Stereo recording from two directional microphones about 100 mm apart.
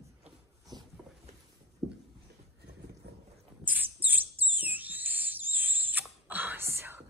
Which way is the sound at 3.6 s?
15° right (ahead or behind).